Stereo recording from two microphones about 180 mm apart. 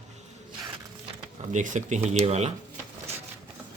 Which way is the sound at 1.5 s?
40° right (ahead or behind).